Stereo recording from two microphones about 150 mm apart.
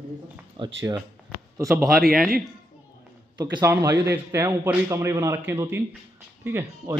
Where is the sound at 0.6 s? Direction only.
35° right (ahead or behind).